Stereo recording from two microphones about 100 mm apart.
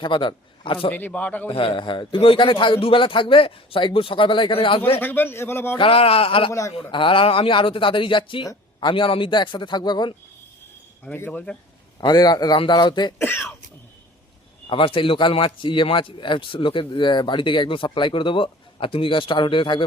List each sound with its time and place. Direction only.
0.0 s a man's voice: 55° left (ahead or behind)
0.9 s speech: 15° left (ahead or behind)
1.5 s a man's voice: 65° left (ahead or behind)
4.9 s speech: 20° left (ahead or behind)
5.7 s a man's voice: 65° left (ahead or behind)
6.5 s a man's voice: 30° left (ahead or behind)
6.9 s a man's voice: 60° left (ahead or behind)
11.0 s speech: 15° left (ahead or behind)
11.9 s a man's voice: 45° left (ahead or behind)
13.1 s speech: 20° left (ahead or behind)
14.7 s a man's voice: 60° left (ahead or behind)